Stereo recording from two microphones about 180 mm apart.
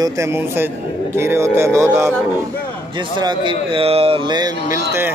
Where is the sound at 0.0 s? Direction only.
15° right (ahead or behind).